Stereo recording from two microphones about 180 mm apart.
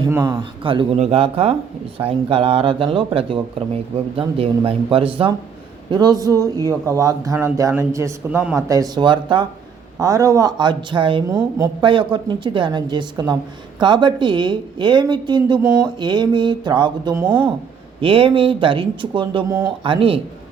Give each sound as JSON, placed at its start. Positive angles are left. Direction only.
{"t": 0.1, "sound": "speech", "side_deg": -15}
{"t": 0.3, "sound": "speech", "side_deg": -30}
{"t": 19.5, "sound": "speech", "side_deg": -15}
{"t": 19.8, "sound": "speech", "side_deg": -30}